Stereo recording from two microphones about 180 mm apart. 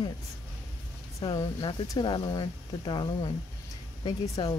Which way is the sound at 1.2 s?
20° left (ahead or behind).